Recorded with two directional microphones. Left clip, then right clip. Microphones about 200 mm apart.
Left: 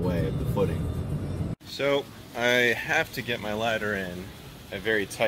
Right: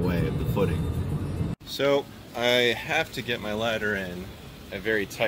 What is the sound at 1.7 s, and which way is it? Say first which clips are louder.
Speech: right 2 dB; 15° right (ahead or behind).